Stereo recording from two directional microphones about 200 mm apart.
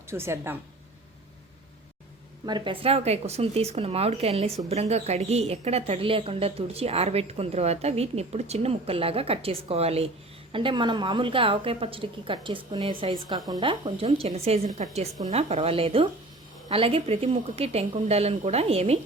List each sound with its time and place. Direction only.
0.1 s a woman's voice: 10° right (ahead or behind)
2.5 s a woman's voice: 25° right (ahead or behind)